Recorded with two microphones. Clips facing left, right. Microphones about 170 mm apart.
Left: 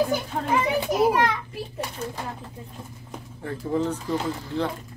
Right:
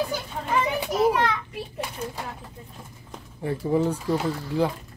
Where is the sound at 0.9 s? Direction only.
10° left (ahead or behind).